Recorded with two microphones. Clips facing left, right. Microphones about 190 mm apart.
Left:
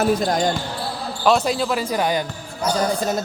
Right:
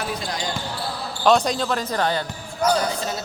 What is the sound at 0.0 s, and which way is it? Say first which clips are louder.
Speech: left 9 dB; 45° left (ahead or behind).